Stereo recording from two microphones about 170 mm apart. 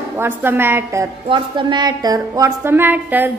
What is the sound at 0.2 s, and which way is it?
Speech, 15° right (ahead or behind).